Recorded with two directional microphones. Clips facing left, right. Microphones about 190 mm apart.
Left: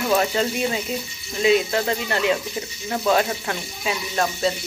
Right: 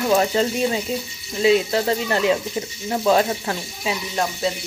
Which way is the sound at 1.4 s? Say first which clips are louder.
Right 2 dB; 30° right (ahead or behind).